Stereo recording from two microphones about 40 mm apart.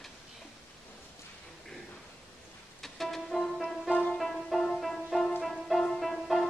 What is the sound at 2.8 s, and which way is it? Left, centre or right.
Music, centre.